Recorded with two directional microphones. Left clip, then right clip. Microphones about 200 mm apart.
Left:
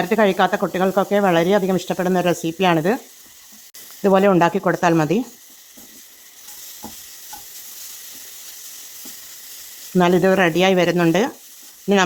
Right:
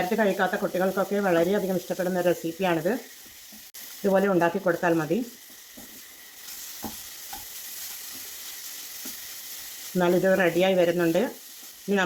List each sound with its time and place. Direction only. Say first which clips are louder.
0.1 s speech: left 8 dB; 50° left (ahead or behind)
4.0 s speech: left 8 dB; 55° left (ahead or behind)
10.0 s speech: left 6 dB; 55° left (ahead or behind)